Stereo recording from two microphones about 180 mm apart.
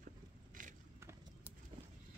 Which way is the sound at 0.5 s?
50° right (ahead or behind).